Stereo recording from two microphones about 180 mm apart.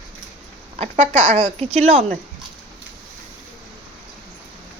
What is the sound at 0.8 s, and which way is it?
Speech, 35° right (ahead or behind).